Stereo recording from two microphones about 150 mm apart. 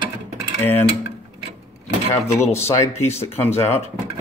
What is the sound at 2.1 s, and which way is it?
Speech, 20° left (ahead or behind).